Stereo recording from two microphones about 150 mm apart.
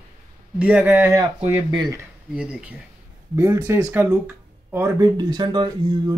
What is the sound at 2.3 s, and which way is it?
Speech, 10° right (ahead or behind).